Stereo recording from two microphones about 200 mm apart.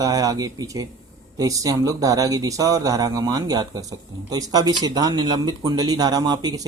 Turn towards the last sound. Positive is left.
turn(degrees=-20)  # may be behind; listen again after turning